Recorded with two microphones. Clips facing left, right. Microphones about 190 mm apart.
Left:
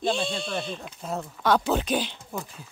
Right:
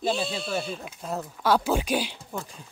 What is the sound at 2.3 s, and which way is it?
Speech, 5° left (ahead or behind).